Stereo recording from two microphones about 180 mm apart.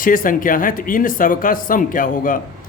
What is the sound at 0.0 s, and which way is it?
Speech, 50° left (ahead or behind).